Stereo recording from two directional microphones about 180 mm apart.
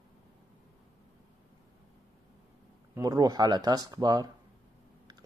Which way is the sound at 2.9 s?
20° right (ahead or behind).